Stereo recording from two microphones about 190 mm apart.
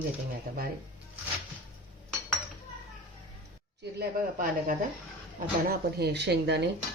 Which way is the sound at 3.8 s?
50° right (ahead or behind).